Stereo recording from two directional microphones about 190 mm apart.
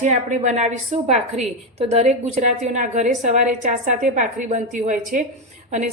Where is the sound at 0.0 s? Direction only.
40° right (ahead or behind).